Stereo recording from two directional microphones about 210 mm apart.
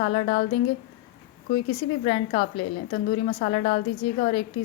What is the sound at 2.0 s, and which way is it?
A woman's voice, 30° left (ahead or behind).